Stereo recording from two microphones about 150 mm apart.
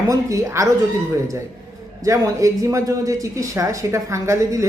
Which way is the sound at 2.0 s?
20° right (ahead or behind).